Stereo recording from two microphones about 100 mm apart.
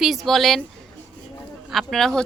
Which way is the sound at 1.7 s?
Centre (ahead or behind).